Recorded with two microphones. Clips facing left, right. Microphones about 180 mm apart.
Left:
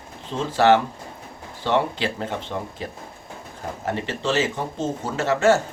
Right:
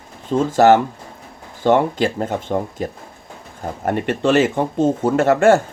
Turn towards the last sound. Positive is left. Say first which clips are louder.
# right 6 dB
turn(degrees=-55)  # may be behind; listen again after turning